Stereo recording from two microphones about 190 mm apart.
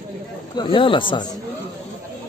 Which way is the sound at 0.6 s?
25° left (ahead or behind).